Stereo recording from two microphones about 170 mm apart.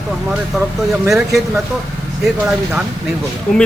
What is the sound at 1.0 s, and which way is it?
Speech, centre (ahead or behind).